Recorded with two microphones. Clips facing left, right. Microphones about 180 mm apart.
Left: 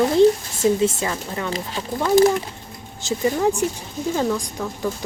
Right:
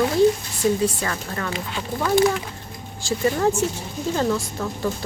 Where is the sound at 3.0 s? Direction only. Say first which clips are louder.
Left 1 dB; 15° left (ahead or behind).